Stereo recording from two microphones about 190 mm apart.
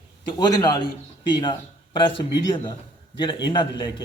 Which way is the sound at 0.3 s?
20° left (ahead or behind).